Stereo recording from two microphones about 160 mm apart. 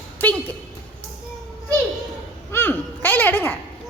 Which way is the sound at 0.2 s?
10° left (ahead or behind).